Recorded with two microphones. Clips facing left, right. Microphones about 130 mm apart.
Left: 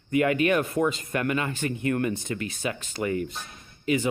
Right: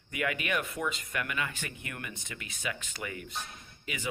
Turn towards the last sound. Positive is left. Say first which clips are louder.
# left 15 dB
turn(degrees=35)  # may be behind; listen again after turning